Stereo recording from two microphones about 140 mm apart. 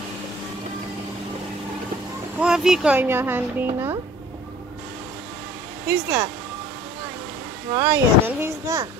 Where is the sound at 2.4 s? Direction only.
5° right (ahead or behind).